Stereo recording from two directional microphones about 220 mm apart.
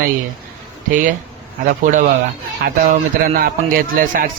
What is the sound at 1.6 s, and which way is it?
A man's voice, 35° right (ahead or behind).